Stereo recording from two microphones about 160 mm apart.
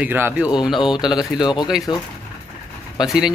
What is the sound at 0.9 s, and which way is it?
Speech, 25° left (ahead or behind).